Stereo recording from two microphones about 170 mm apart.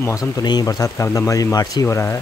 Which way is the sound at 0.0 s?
20° left (ahead or behind).